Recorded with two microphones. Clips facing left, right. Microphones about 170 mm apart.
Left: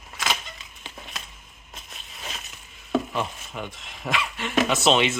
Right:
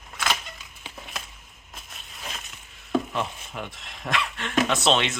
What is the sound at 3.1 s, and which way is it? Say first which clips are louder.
Speech: left 1 dB; centre (ahead or behind).